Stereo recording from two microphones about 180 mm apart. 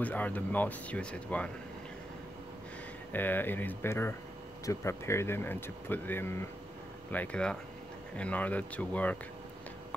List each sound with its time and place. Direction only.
0.0 s speech: 10° left (ahead or behind)
3.1 s speech: 10° left (ahead or behind)